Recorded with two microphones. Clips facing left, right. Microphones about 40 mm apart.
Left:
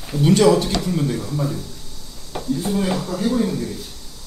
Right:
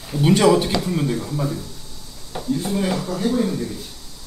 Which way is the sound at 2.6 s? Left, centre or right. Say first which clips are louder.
Left 2 dB; centre.